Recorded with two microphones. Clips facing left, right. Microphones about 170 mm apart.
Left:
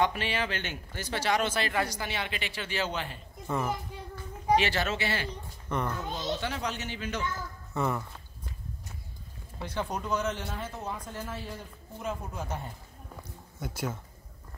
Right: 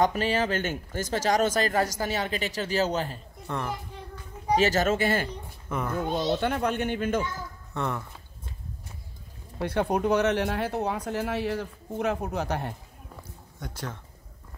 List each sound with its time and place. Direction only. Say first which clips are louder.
0.0 s speech: right 5 dB; 40° right (ahead or behind)
3.4 s a child's voice: left 1 dB; 5° left (ahead or behind)
4.6 s speech: right 10 dB; 45° right (ahead or behind)
5.7 s speech: right 1 dB; 5° right (ahead or behind)
6.3 s speech: right 7 dB; 55° right (ahead or behind)
7.7 s speech: left 1 dB; centre (ahead or behind)
9.6 s speech: right 8 dB; 60° right (ahead or behind)
13.1 s a sound: even; 5° left (ahead or behind)